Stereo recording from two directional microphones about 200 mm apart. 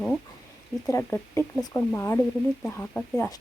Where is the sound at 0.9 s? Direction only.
10° left (ahead or behind).